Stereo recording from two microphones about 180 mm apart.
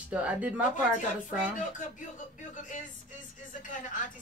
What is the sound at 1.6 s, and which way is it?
Speech, 45° left (ahead or behind).